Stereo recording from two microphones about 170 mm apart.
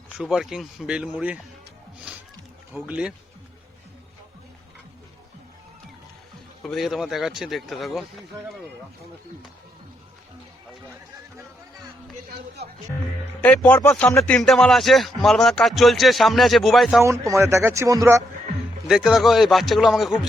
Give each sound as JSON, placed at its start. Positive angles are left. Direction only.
{"t": 0.2, "sound": "a man's voice", "side_deg": 0}
{"t": 2.7, "sound": "speech", "side_deg": -10}
{"t": 6.6, "sound": "a man's voice", "side_deg": 0}
{"t": 13.4, "sound": "a man's voice", "side_deg": 10}
{"t": 17.0, "sound": "speech", "side_deg": -15}
{"t": 18.9, "sound": "a man's voice", "side_deg": 0}